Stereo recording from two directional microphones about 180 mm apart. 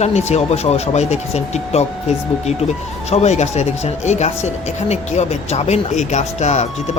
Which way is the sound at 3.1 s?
40° left (ahead or behind).